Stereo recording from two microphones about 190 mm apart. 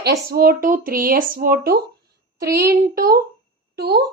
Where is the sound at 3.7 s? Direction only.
55° right (ahead or behind).